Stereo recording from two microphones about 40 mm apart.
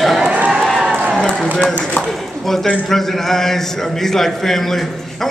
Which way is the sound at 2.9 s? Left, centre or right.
Centre.